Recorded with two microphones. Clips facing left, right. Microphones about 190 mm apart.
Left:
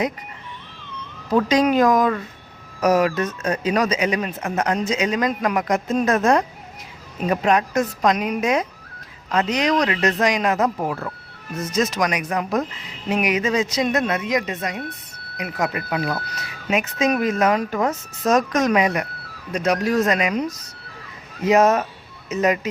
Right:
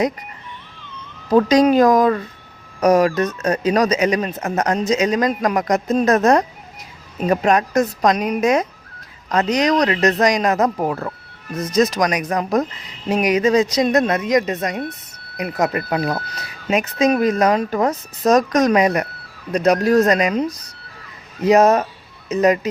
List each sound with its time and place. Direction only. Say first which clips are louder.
1.3 s speech: right 4 dB; 35° right (ahead or behind)